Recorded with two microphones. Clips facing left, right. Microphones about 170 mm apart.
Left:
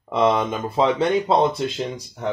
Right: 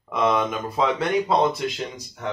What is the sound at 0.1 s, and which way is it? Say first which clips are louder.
Speech: left 3 dB; 30° left (ahead or behind).